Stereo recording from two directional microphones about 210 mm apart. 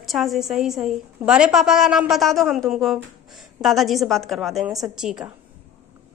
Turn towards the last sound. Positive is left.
turn(degrees=-5)  # may be behind; listen again after turning